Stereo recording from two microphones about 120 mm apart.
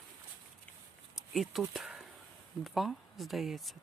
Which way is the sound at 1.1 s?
Centre (ahead or behind).